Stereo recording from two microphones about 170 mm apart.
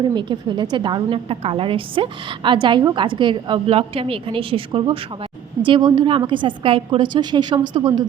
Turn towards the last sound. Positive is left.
turn(degrees=-25)  # may be behind; listen again after turning